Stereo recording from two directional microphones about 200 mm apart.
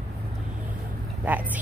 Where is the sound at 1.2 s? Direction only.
10° right (ahead or behind).